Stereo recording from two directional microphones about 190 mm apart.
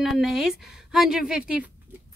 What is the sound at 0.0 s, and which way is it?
Speech, centre (ahead or behind).